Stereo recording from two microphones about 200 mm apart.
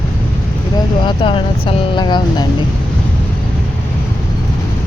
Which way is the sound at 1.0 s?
25° left (ahead or behind).